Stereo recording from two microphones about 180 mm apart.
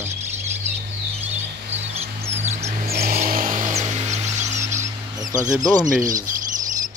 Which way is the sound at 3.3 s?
50° right (ahead or behind).